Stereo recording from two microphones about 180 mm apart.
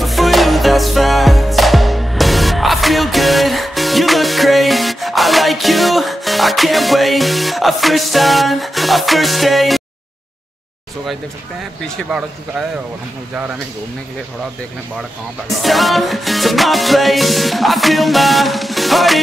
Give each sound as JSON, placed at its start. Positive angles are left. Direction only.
{"t": 0.0, "sound": "music", "side_deg": 0}
{"t": 12.1, "sound": "music", "side_deg": -5}
{"t": 15.6, "sound": "music", "side_deg": 0}